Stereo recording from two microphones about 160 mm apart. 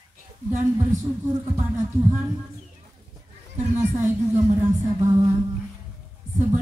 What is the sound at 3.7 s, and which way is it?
Speech, 15° right (ahead or behind).